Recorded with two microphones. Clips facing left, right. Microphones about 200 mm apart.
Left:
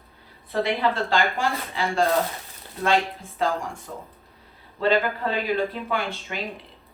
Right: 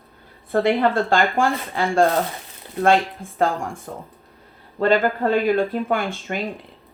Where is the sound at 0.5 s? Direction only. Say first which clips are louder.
Right 6 dB; 50° right (ahead or behind).